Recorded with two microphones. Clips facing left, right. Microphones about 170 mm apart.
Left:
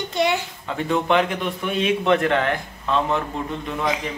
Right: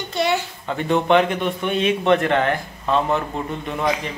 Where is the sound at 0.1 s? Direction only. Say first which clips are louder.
Right 1 dB; 15° left (ahead or behind).